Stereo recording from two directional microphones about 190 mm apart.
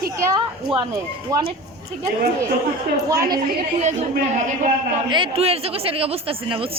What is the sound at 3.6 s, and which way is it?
Speech, 35° right (ahead or behind).